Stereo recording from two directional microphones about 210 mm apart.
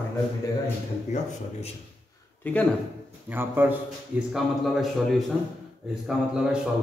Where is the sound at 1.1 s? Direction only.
35° left (ahead or behind).